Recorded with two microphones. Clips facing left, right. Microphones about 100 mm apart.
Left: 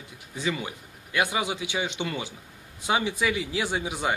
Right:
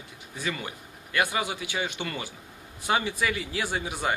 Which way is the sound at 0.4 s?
15° left (ahead or behind).